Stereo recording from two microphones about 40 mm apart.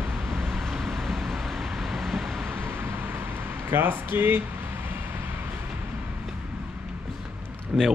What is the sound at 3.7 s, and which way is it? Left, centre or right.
Speech, right.